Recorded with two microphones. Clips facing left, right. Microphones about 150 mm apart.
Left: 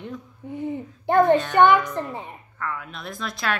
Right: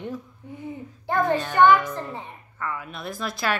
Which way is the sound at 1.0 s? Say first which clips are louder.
Left 6 dB; 20° left (ahead or behind).